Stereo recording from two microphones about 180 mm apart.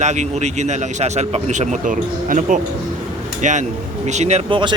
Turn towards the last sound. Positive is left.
turn(degrees=-40)  # may be behind; listen again after turning